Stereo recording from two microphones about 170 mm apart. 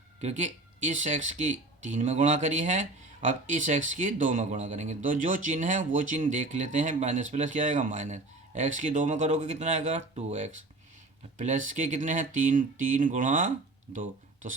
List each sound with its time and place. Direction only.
0.2 s speech: 45° right (ahead or behind)